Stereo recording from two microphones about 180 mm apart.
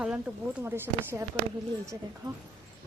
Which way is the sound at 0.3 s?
5° right (ahead or behind).